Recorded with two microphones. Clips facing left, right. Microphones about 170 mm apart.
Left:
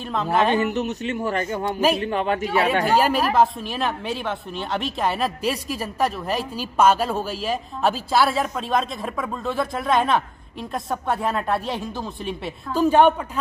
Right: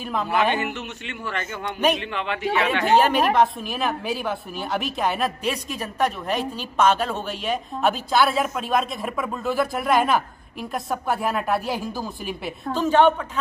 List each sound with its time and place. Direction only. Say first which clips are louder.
0.0 s speech: left 2 dB; centre (ahead or behind)
0.5 s a man's voice: left 5 dB; 40° left (ahead or behind)
3.0 s speech: right 1 dB; 5° left (ahead or behind)
12.7 s a man's voice: left 2 dB; 10° left (ahead or behind)